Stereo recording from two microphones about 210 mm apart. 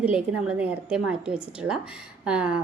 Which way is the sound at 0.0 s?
5° right (ahead or behind).